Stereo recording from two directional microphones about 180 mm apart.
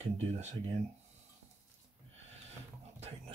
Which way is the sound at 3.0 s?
35° right (ahead or behind).